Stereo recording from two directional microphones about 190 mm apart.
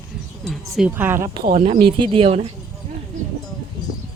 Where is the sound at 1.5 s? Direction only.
35° right (ahead or behind).